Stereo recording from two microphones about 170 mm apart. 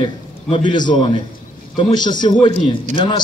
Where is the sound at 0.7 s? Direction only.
25° left (ahead or behind).